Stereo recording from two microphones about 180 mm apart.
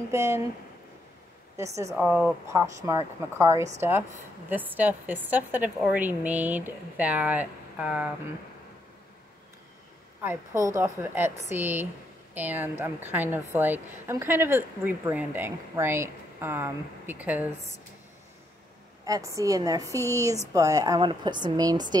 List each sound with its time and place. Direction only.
0.1 s a woman's voice: 15° right (ahead or behind)
1.6 s a woman's voice: 15° right (ahead or behind)
2.0 s a woman's voice: 5° right (ahead or behind)
10.2 s a woman's voice: 15° right (ahead or behind)
19.0 s a woman's voice: 20° right (ahead or behind)